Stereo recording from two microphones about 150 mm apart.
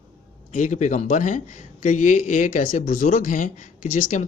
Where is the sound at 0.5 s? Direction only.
55° left (ahead or behind).